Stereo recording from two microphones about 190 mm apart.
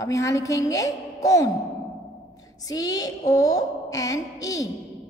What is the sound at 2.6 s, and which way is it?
A woman's voice, 20° left (ahead or behind).